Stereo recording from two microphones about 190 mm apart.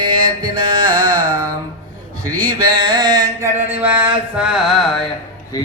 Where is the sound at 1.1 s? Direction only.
45° right (ahead or behind).